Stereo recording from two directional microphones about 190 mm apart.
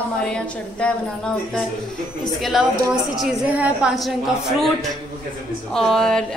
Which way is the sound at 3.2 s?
5° right (ahead or behind).